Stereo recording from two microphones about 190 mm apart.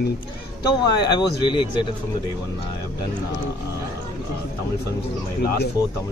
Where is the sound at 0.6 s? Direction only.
20° left (ahead or behind).